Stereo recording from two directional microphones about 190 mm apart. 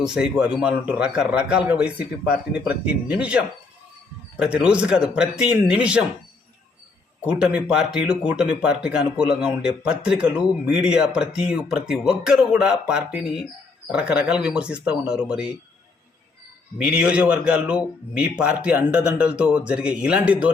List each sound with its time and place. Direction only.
0.0 s speech: 5° right (ahead or behind)
7.3 s speech: 5° right (ahead or behind)
16.7 s speech: 5° right (ahead or behind)